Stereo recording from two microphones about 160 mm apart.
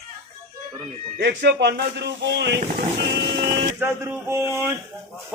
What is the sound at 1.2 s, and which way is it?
Speech, 90° right.